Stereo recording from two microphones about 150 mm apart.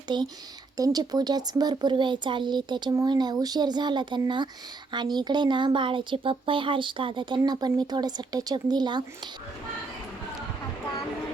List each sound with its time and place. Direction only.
0.1 s speech: 30° right (ahead or behind)